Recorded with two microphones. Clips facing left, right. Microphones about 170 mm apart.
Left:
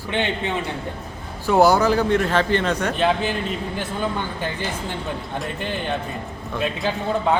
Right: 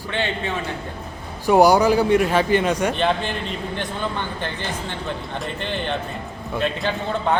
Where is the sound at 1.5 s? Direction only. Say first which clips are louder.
Right 2 dB; 15° right (ahead or behind).